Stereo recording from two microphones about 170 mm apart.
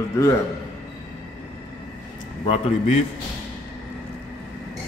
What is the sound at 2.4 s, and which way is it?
Speech, 35° left (ahead or behind).